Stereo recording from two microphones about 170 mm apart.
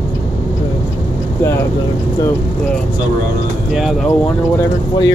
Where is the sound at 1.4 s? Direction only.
15° left (ahead or behind).